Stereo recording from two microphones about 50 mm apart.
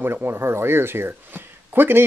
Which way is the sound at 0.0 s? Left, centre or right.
Right.